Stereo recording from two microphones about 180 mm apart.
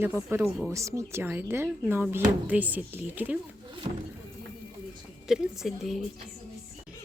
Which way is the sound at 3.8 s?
30° right (ahead or behind).